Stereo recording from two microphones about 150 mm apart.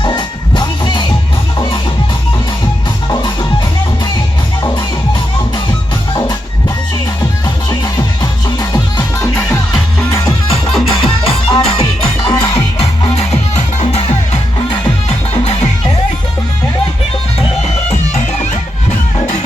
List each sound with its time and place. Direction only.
0.0 s music: 30° left (ahead or behind)
7.7 s music: 25° left (ahead or behind)
9.3 s music: 10° left (ahead or behind)
10.8 s music: 40° left (ahead or behind)
11.8 s music: 25° left (ahead or behind)
12.5 s music: 40° left (ahead or behind)